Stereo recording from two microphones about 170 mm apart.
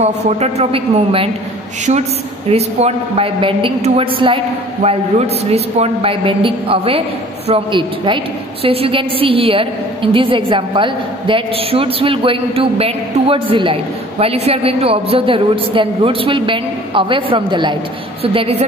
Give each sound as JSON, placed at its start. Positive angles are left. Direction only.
{"t": 0.0, "sound": "a woman's voice", "side_deg": -40}
{"t": 2.5, "sound": "a woman's voice", "side_deg": -35}